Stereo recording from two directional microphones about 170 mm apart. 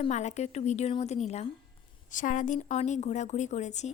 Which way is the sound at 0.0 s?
45° left (ahead or behind).